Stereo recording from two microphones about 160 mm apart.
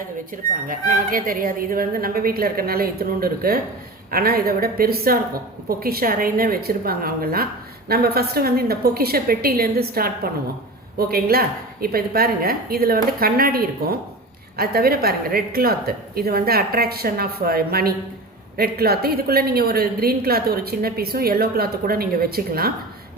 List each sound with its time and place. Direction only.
0.7 s a woman's voice: 60° right (ahead or behind)